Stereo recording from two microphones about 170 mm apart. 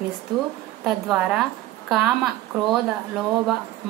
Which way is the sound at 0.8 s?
5° right (ahead or behind).